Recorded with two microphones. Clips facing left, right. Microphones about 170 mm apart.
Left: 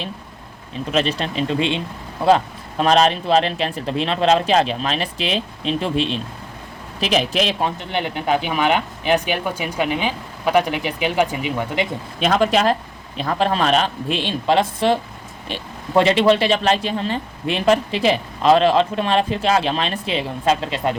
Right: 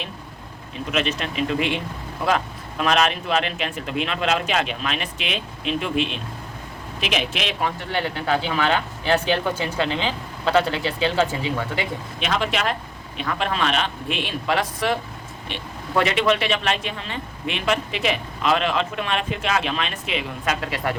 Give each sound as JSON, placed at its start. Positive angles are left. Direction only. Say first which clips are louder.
{"t": 0.9, "sound": "speech", "louder": "left 4 dB", "side_deg": 35}
{"t": 7.8, "sound": "speech", "louder": "left 2 dB", "side_deg": 20}
{"t": 12.2, "sound": "speech", "louder": "left 7 dB", "side_deg": 40}